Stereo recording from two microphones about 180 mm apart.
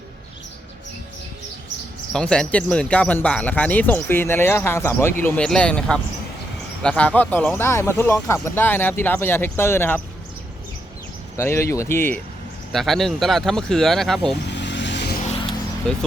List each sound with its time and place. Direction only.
2.1 s speech: 5° left (ahead or behind)
11.3 s speech: 15° left (ahead or behind)
12.7 s speech: centre (ahead or behind)
14.4 s vehicle: 75° left (ahead or behind)
15.9 s speech: 5° left (ahead or behind)